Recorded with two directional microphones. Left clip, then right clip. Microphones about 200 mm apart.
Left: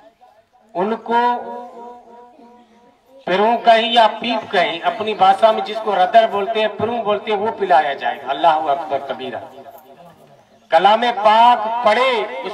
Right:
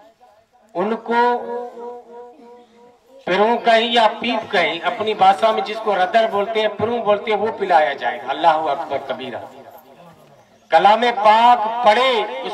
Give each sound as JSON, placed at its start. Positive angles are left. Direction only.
{"t": 0.7, "sound": "a man's voice", "side_deg": -20}
{"t": 3.3, "sound": "a man's voice", "side_deg": -20}
{"t": 10.7, "sound": "a man's voice", "side_deg": -15}